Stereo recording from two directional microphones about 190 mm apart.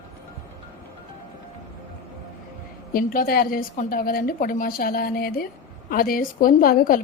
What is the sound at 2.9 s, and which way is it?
A woman's voice, 50° left (ahead or behind).